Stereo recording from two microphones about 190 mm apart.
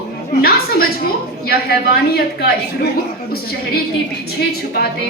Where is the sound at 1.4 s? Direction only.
55° left (ahead or behind).